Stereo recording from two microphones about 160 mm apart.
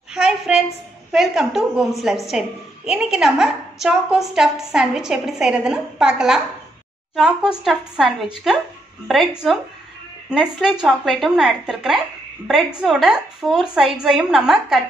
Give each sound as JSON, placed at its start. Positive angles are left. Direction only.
{"t": 0.1, "sound": "a sound", "side_deg": -5}
{"t": 1.1, "sound": "a woman's voice", "side_deg": 0}
{"t": 7.6, "sound": "a woman's voice", "side_deg": 0}
{"t": 10.3, "sound": "a woman's voice", "side_deg": 0}